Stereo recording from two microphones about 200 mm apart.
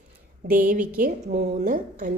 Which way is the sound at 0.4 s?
45° right (ahead or behind).